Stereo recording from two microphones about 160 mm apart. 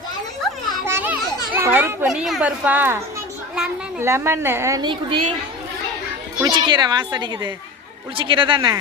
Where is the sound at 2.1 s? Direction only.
Centre (ahead or behind).